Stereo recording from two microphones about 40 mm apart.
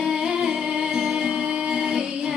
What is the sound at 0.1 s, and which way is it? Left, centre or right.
Music, centre.